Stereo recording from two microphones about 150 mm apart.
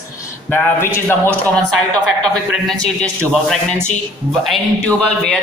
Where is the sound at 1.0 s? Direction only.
10° left (ahead or behind).